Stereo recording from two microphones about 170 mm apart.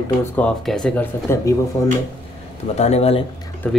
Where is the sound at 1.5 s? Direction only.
20° left (ahead or behind).